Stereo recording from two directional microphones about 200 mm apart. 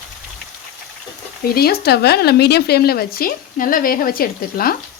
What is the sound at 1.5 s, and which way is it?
Speech, 50° left (ahead or behind).